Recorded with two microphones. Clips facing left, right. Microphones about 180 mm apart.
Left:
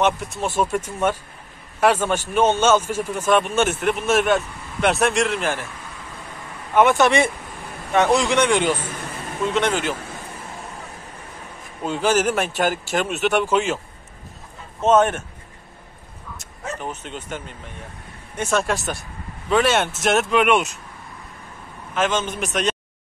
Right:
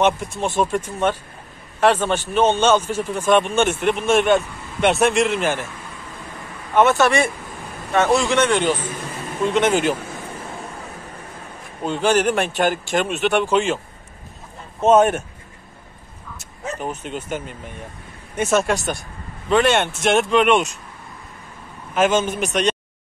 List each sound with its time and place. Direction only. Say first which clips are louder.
0.0 s a man's voice: right 2 dB; 5° left (ahead or behind)
6.7 s a man's voice: even; 15° left (ahead or behind)
9.5 s a man's voice: right 4 dB; 5° right (ahead or behind)
11.8 s speech: right 2 dB; 5° left (ahead or behind)
14.8 s a man's voice: right 2 dB; 10° right (ahead or behind)
16.3 s speech: right 2 dB; 10° right (ahead or behind); by 20.7 s 5° left (ahead or behind)
21.9 s a man's voice: right 4 dB; 10° right (ahead or behind)